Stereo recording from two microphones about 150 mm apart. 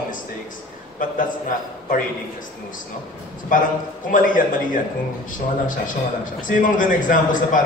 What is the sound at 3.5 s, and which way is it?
A man's voice, 60° left (ahead or behind).